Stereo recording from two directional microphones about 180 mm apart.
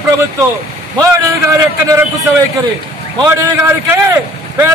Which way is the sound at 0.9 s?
20° right (ahead or behind).